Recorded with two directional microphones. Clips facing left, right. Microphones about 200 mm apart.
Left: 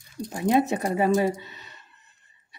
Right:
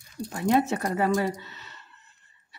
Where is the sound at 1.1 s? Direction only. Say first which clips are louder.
Left 4 dB; 15° left (ahead or behind).